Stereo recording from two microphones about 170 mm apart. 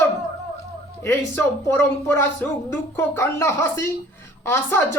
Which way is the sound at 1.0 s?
15° left (ahead or behind).